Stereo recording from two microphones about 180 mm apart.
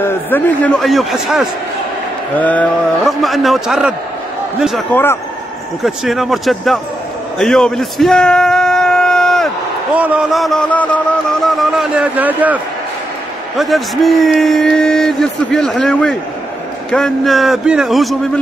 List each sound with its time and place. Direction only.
0.0 s speech: 10° left (ahead or behind)
2.3 s speech: 10° left (ahead or behind)
4.9 s speech: 10° left (ahead or behind)
5.9 s speech: centre (ahead or behind)
7.3 s bellow: 5° left (ahead or behind)
9.9 s speech: 10° right (ahead or behind)
13.6 s speech: centre (ahead or behind)